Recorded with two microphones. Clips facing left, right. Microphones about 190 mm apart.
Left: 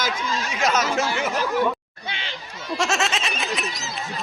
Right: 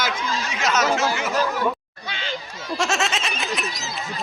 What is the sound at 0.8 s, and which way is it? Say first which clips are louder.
Speech: right 2 dB; 45° right (ahead or behind).